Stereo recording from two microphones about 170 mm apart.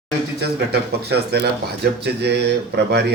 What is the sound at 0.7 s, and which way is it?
A man's voice, 70° right (ahead or behind).